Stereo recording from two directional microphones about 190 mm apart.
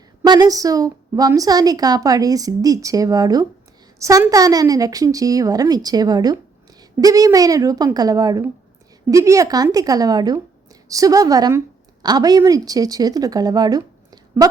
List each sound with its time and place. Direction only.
0.3 s a woman's voice: 20° right (ahead or behind)